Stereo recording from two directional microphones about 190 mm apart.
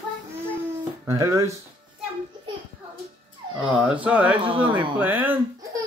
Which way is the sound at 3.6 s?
5° right (ahead or behind).